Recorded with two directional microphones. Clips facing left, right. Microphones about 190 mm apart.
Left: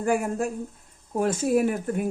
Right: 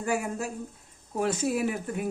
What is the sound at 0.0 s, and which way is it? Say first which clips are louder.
Speech: left 5 dB; 50° left (ahead or behind).